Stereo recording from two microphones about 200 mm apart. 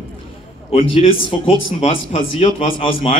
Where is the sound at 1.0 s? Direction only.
25° left (ahead or behind).